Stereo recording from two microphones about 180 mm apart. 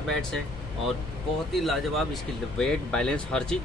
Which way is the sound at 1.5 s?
Centre (ahead or behind).